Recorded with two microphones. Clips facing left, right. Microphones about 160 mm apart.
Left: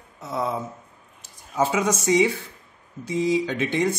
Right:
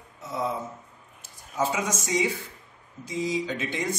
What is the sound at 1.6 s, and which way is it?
Speech, 65° left (ahead or behind).